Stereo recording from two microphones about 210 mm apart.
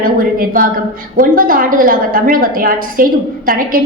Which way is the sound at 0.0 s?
40° right (ahead or behind).